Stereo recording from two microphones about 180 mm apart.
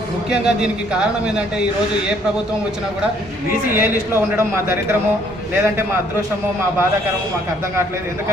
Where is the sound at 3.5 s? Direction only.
50° left (ahead or behind).